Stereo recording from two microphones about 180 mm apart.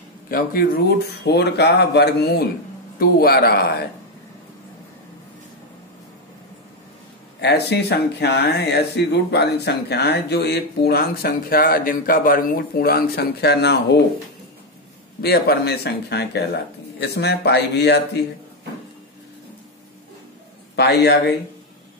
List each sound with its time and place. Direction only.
0.3 s speech: 55° left (ahead or behind)
7.3 s speech: 65° left (ahead or behind)
15.2 s speech: 65° left (ahead or behind)
20.7 s a man's voice: 65° left (ahead or behind)